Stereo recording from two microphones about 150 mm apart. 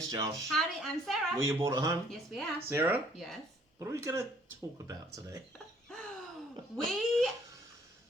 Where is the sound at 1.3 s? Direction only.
20° right (ahead or behind).